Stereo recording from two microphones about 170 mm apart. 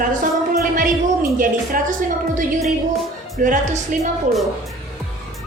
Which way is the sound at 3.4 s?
50° right (ahead or behind).